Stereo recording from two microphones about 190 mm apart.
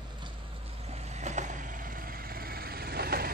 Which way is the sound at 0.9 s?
35° right (ahead or behind).